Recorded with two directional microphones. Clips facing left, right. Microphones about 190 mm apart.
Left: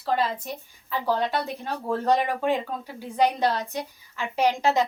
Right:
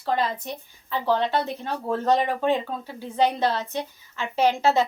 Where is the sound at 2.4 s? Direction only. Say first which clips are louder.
Right 2 dB; 10° left (ahead or behind).